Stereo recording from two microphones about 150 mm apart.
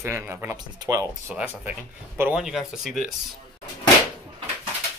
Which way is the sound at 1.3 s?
10° right (ahead or behind).